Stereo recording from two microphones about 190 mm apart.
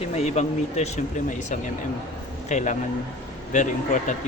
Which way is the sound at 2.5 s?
40° left (ahead or behind).